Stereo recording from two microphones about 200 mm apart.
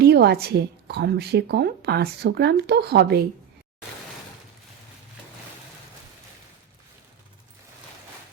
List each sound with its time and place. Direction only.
0.0 s a woman's voice: 55° right (ahead or behind)